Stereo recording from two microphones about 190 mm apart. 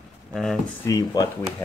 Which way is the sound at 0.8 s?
20° left (ahead or behind).